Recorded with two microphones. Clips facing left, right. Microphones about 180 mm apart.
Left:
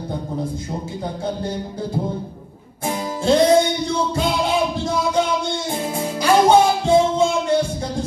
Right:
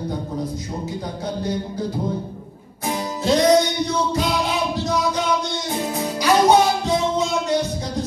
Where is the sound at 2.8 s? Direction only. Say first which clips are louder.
Left 2 dB; 30° left (ahead or behind).